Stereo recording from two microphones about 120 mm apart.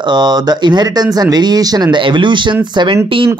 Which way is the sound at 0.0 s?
35° right (ahead or behind).